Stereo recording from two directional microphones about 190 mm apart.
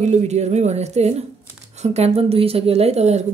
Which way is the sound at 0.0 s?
35° right (ahead or behind).